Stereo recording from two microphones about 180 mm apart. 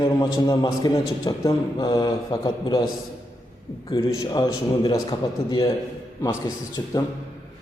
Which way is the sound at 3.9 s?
20° left (ahead or behind).